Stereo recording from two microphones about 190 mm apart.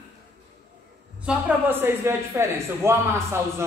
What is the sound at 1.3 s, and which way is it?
Speech, 10° right (ahead or behind).